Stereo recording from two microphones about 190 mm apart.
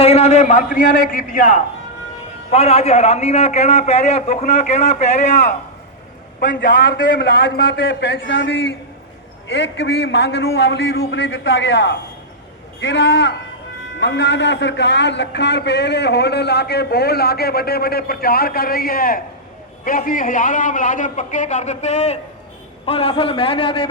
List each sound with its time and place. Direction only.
0.0 s a man's voice: 35° left (ahead or behind)
2.5 s a man's voice: 30° left (ahead or behind)